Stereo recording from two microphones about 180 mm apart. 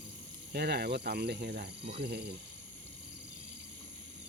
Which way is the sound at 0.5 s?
60° right (ahead or behind).